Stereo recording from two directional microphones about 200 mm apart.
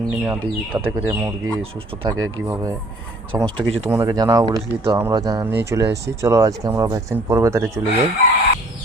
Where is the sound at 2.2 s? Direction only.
90° right.